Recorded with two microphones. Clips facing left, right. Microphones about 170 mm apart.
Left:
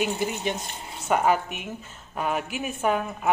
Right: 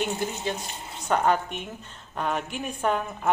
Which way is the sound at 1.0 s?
5° left (ahead or behind).